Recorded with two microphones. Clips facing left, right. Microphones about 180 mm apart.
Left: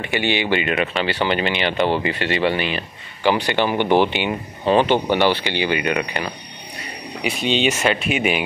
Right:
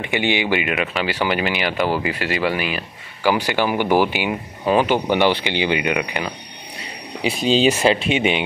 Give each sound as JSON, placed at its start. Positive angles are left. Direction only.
{"t": 0.0, "sound": "speech", "side_deg": -15}
{"t": 7.2, "sound": "speech", "side_deg": -35}